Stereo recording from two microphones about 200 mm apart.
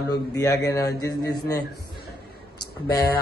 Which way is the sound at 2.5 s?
20° left (ahead or behind).